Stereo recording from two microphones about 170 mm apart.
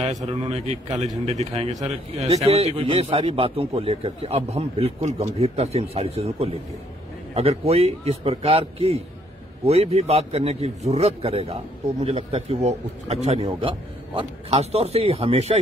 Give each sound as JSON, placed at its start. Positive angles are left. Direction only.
{"t": 0.3, "sound": "a man's voice", "side_deg": -40}